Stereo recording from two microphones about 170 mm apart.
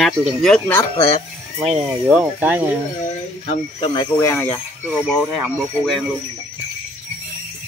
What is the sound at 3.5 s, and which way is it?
Speech, 35° left (ahead or behind).